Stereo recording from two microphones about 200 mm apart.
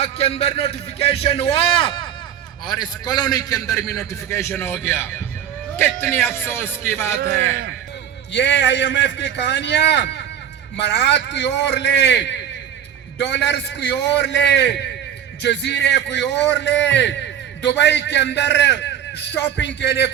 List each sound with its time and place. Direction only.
0.0 s a man's voice: 30° left (ahead or behind); by 7.2 s 10° left (ahead or behind)
8.3 s a man's voice: 60° left (ahead or behind)